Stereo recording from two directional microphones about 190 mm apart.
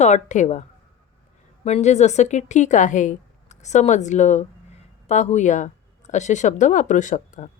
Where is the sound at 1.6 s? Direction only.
35° left (ahead or behind).